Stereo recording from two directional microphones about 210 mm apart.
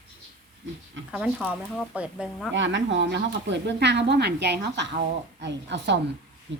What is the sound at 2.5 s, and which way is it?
Speech, 60° right (ahead or behind).